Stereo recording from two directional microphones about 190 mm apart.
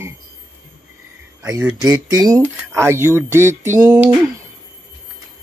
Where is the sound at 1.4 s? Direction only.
15° right (ahead or behind).